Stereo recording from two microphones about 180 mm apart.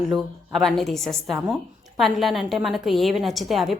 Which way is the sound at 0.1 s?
Centre (ahead or behind).